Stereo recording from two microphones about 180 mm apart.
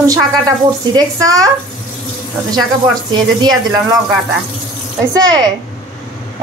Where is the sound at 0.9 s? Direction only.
20° right (ahead or behind).